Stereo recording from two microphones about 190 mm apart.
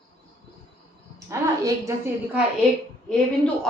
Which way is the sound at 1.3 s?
15° right (ahead or behind).